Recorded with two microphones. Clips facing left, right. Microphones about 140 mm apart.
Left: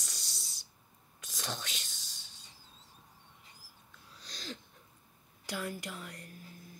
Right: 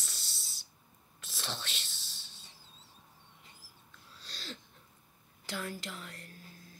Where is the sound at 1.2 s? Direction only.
15° left (ahead or behind).